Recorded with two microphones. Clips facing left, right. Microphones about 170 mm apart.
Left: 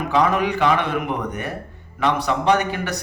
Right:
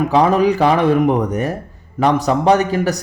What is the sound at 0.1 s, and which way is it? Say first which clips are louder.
A man's voice: right 3 dB; 40° right (ahead or behind).